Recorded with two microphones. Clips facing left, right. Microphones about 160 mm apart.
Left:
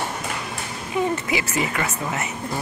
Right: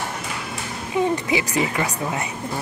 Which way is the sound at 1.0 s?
20° right (ahead or behind).